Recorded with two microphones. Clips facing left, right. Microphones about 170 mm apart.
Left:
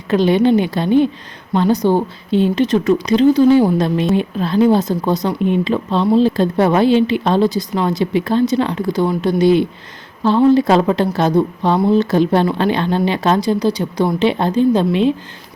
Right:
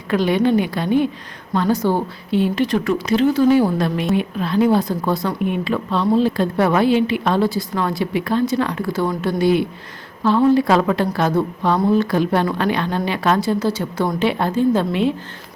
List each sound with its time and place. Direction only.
0.1 s a woman's voice: 25° left (ahead or behind)